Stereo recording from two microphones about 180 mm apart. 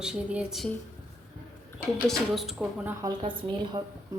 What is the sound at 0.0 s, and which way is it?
Speech, 5° right (ahead or behind).